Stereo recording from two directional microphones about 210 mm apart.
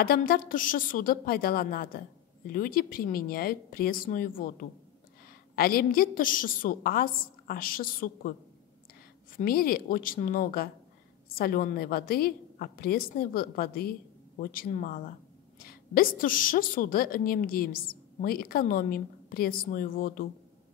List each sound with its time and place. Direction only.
0.0 s a woman's voice: 45° left (ahead or behind)
9.4 s a woman's voice: 45° left (ahead or behind)